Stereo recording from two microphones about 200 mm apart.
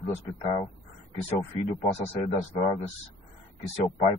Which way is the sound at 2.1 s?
30° left (ahead or behind).